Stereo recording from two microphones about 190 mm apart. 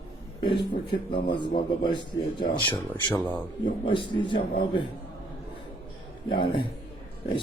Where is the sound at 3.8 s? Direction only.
25° left (ahead or behind).